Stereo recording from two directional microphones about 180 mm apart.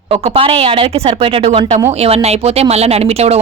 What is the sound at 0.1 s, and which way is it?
Speech, 30° right (ahead or behind).